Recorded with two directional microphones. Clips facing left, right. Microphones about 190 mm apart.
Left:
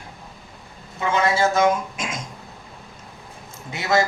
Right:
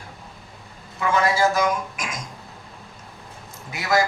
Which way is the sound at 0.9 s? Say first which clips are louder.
Even; 25° left (ahead or behind).